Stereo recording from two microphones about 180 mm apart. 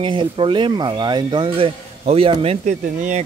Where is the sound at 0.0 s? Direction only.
25° right (ahead or behind).